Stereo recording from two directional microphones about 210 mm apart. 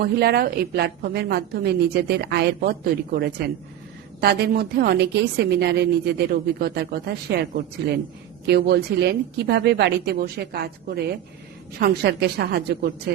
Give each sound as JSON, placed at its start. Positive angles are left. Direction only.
{"t": 0.0, "sound": "a woman's voice", "side_deg": -50}